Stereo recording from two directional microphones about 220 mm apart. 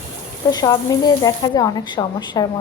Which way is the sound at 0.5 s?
15° left (ahead or behind).